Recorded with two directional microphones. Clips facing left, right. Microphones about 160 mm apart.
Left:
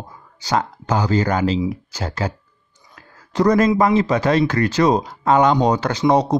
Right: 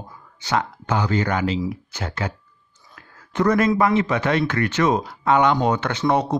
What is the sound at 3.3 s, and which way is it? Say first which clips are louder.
Speech: left 3 dB; 35° left (ahead or behind).